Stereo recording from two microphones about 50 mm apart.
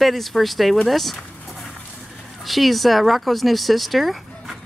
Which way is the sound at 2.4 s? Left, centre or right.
Centre.